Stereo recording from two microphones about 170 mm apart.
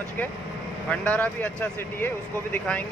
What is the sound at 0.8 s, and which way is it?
Speech, 10° left (ahead or behind).